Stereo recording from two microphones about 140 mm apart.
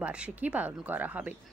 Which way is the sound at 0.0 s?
10° right (ahead or behind).